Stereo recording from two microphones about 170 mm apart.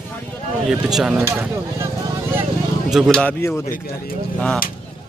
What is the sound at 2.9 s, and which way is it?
Speech, centre (ahead or behind).